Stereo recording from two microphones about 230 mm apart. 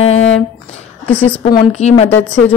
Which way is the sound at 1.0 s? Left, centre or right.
Centre.